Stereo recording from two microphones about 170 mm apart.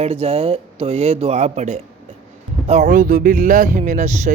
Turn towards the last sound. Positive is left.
turn(degrees=-45)  # may be behind; listen again after turning